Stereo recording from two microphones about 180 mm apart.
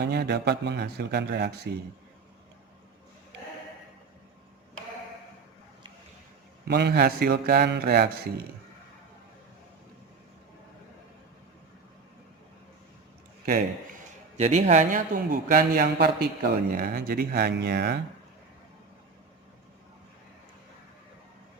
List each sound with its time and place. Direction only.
0.0 s a man's voice: 65° right (ahead or behind)
6.7 s a man's voice: 65° right (ahead or behind)
13.4 s speech: 50° right (ahead or behind)
14.3 s a man's voice: 40° right (ahead or behind); by 18.0 s 65° right (ahead or behind)